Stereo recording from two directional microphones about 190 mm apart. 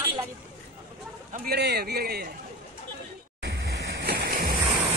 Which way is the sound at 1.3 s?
60° right (ahead or behind).